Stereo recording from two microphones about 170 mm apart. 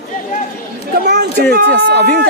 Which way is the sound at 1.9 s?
65° right (ahead or behind).